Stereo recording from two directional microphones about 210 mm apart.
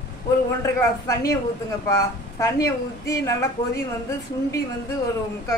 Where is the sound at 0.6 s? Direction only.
15° left (ahead or behind).